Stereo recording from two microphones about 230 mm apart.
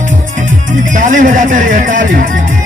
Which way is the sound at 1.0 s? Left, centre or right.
Right.